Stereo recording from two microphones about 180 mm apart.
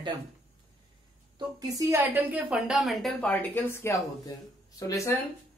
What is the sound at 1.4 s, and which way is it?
A woman's voice, 20° right (ahead or behind).